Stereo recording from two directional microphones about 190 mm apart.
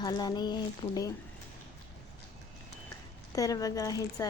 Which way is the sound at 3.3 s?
20° left (ahead or behind).